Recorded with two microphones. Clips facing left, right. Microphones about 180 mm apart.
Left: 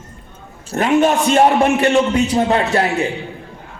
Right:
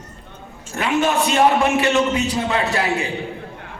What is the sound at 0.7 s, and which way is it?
A man's voice, 40° left (ahead or behind).